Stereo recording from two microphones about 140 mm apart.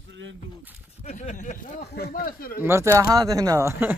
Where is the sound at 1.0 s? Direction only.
60° left (ahead or behind); by 2.6 s 90° left.